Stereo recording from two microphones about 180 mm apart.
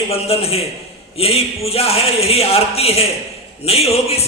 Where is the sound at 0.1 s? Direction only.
35° left (ahead or behind).